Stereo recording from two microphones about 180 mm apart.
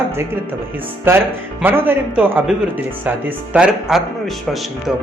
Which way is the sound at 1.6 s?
10° right (ahead or behind).